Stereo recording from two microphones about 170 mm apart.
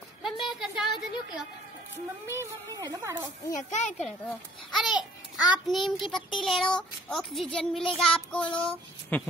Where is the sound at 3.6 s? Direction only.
45° left (ahead or behind).